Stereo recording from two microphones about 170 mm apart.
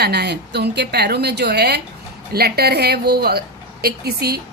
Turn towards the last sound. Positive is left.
turn(degrees=-70)  # may be behind; listen again after turning